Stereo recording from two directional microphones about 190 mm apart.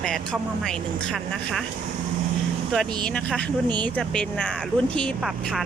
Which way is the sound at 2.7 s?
5° left (ahead or behind).